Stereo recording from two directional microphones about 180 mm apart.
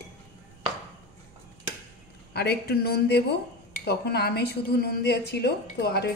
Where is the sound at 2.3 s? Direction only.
60° left (ahead or behind).